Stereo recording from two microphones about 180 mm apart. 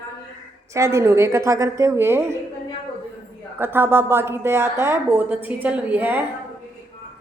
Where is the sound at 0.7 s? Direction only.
15° right (ahead or behind).